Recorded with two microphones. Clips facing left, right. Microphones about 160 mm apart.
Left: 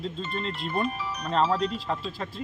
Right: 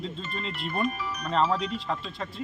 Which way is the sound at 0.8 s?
30° left (ahead or behind).